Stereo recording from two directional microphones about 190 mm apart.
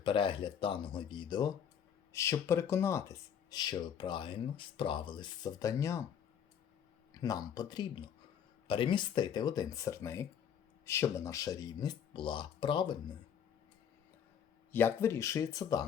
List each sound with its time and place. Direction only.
0.0 s speech: 25° left (ahead or behind)
7.1 s speech: 20° left (ahead or behind)
14.7 s speech: 10° left (ahead or behind)